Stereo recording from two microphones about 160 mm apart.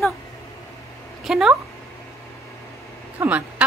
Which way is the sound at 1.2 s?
Centre (ahead or behind).